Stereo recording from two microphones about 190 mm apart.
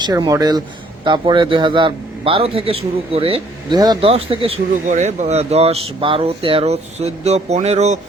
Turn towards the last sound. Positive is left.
turn(degrees=-35)  # may be behind; listen again after turning